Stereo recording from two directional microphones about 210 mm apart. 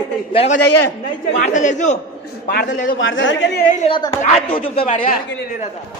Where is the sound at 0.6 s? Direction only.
90° left.